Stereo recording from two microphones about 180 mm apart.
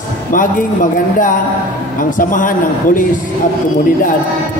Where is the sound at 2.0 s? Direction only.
50° left (ahead or behind).